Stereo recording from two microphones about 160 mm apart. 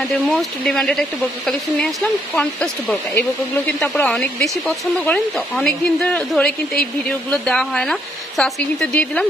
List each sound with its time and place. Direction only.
0.3 s speech: centre (ahead or behind)